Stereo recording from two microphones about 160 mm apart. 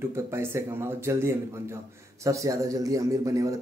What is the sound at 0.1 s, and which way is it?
Speech, 15° right (ahead or behind).